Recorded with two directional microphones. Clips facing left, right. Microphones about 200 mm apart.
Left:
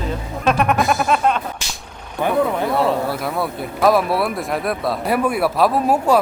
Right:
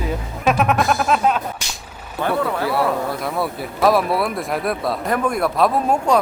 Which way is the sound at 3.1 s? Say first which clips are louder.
Left 1 dB; centre (ahead or behind).